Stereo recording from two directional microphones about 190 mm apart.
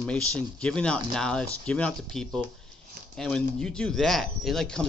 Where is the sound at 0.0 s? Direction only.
5° left (ahead or behind).